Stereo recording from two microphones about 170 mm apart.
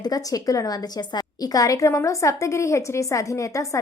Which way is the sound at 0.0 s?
20° left (ahead or behind).